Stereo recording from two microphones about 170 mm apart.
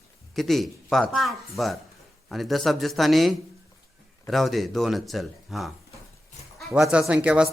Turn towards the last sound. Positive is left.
turn(degrees=-5)  # may be behind; listen again after turning